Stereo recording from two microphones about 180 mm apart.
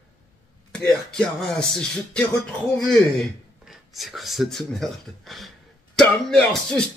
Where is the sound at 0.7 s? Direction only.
5° left (ahead or behind).